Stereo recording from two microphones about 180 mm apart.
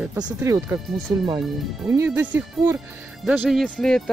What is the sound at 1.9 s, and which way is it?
Speech, 10° right (ahead or behind).